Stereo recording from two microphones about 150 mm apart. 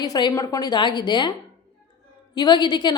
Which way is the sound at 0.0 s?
25° left (ahead or behind).